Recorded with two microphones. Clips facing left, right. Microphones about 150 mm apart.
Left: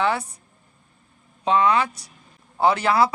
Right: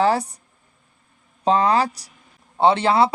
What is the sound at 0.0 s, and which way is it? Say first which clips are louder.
Speech: right 4 dB; 35° right (ahead or behind).